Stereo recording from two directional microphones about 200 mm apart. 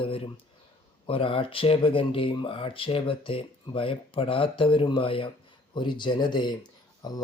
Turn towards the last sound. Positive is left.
turn(degrees=20)  # may be behind; listen again after turning